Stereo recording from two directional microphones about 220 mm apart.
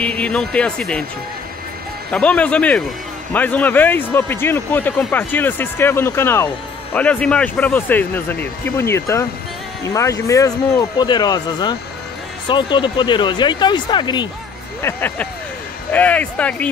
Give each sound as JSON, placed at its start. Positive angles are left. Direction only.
{"t": 0.0, "sound": "speech", "side_deg": 5}
{"t": 2.1, "sound": "speech", "side_deg": 5}